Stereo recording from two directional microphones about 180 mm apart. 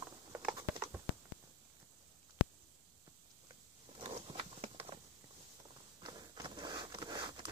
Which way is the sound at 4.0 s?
30° right (ahead or behind).